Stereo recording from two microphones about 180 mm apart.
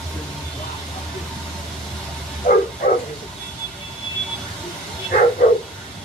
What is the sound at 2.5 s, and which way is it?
Dog, 45° left (ahead or behind).